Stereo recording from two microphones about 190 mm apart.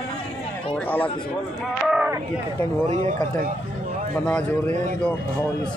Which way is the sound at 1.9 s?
5° right (ahead or behind).